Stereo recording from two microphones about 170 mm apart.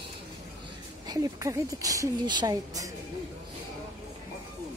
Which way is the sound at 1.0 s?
20° right (ahead or behind).